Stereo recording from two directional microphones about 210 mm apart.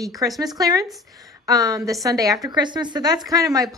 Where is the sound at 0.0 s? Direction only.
15° right (ahead or behind).